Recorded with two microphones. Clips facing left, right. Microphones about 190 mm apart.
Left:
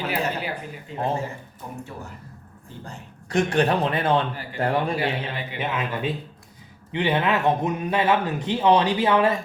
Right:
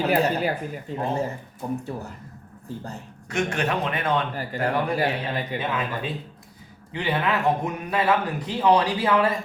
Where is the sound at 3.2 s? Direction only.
35° left (ahead or behind).